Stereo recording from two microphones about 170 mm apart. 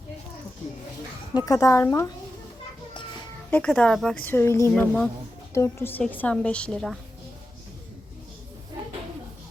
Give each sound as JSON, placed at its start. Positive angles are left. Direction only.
{"t": 1.3, "sound": "a woman's voice", "side_deg": 20}
{"t": 3.5, "sound": "a woman's voice", "side_deg": 5}